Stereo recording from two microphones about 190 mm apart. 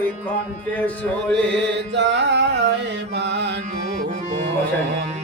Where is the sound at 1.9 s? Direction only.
65° right (ahead or behind).